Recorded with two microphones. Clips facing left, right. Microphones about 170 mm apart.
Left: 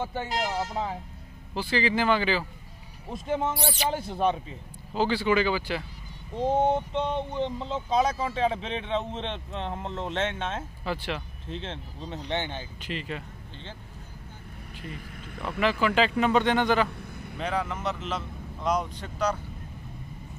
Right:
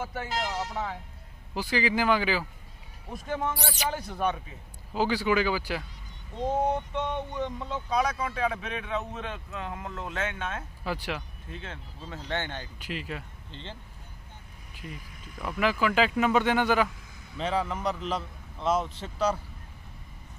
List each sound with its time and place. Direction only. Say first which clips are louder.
0.0 s speech: left 3 dB; 30° left (ahead or behind)
1.5 s speech: left 1 dB; 10° right (ahead or behind)
3.1 s speech: left 3 dB; 25° left (ahead or behind)
4.9 s speech: left 1 dB; 10° right (ahead or behind)
6.4 s speech: left 3 dB; 25° left (ahead or behind)
10.8 s speech: even; 10° right (ahead or behind)
11.4 s speech: left 5 dB; 25° left (ahead or behind)
12.8 s speech: left 2 dB; 5° right (ahead or behind)
14.8 s speech: left 2 dB; 55° left (ahead or behind)
15.6 s speech: left 1 dB; 5° right (ahead or behind)
16.9 s a sound: left 9 dB; 60° left (ahead or behind)
17.4 s speech: right 1 dB; 30° right (ahead or behind)